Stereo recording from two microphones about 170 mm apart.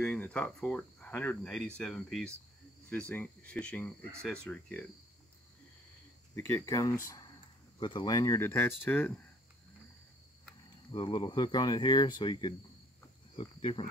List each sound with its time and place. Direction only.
0.0 s speech: 5° left (ahead or behind)
6.3 s speech: 20° left (ahead or behind)
10.9 s speech: 30° left (ahead or behind)